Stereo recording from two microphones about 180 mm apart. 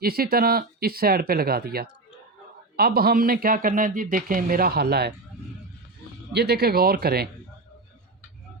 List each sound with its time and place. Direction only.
0.0 s speech: 55° right (ahead or behind)
6.3 s speech: 65° right (ahead or behind)